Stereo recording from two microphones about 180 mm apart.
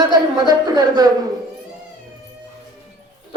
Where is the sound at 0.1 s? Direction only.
20° right (ahead or behind).